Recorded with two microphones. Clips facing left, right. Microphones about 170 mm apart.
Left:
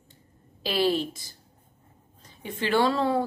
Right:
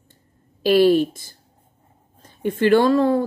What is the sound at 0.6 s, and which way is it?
A woman's voice, 50° right (ahead or behind).